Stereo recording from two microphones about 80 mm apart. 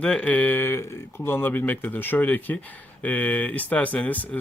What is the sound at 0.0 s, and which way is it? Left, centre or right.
Speech, centre.